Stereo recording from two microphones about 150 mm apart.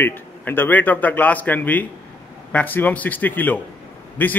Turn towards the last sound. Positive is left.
turn(degrees=10)  # may be behind; listen again after turning